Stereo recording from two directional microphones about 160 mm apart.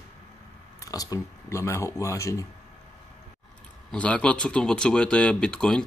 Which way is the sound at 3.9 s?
5° left (ahead or behind).